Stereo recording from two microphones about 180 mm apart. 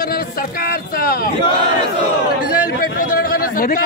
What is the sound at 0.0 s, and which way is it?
A man's voice, 55° left (ahead or behind).